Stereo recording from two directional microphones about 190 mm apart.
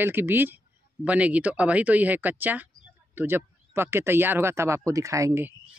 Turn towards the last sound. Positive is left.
turn(degrees=-15)  # may be behind; listen again after turning